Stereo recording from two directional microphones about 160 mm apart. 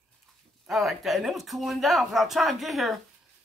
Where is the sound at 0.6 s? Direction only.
Centre (ahead or behind).